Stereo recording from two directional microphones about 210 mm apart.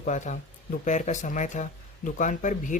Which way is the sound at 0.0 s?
35° left (ahead or behind).